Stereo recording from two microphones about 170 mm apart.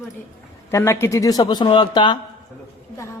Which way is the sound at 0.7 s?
15° left (ahead or behind).